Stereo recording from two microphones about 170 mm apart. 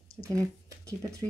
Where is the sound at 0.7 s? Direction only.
20° right (ahead or behind).